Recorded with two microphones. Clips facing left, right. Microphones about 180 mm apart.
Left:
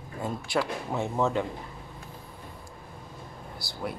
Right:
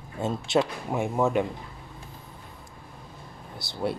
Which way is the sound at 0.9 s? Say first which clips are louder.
Right 2 dB; 15° right (ahead or behind).